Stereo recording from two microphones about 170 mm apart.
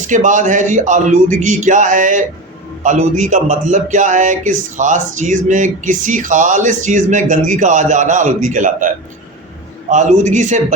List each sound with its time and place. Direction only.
0.1 s a man's voice: 50° right (ahead or behind)
9.9 s a man's voice: 45° right (ahead or behind)